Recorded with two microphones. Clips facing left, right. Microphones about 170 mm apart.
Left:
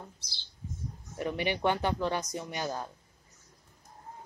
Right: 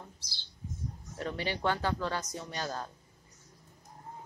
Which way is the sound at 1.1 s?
15° left (ahead or behind).